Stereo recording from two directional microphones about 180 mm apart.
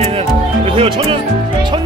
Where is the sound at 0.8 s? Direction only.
30° right (ahead or behind).